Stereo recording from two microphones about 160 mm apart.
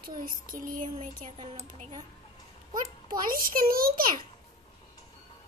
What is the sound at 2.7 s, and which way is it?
A child's voice, 60° right (ahead or behind).